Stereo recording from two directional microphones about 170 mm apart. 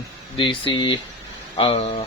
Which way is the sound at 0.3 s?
30° left (ahead or behind).